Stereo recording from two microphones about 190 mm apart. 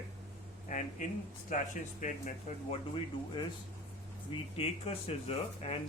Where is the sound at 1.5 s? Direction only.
40° left (ahead or behind).